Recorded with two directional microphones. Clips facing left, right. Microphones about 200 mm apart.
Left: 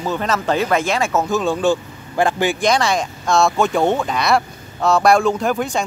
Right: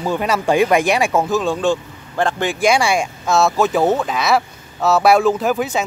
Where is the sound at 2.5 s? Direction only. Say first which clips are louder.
Right 2 dB; 10° right (ahead or behind).